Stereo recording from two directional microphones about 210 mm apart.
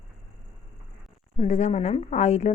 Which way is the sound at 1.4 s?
30° left (ahead or behind).